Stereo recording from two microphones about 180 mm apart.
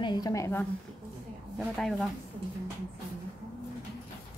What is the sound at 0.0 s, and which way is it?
Speech, 20° left (ahead or behind).